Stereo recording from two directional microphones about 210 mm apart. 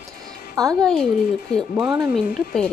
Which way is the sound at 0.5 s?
15° right (ahead or behind).